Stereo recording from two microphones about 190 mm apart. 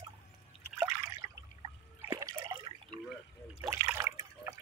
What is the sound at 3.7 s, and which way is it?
Liquid, 15° right (ahead or behind).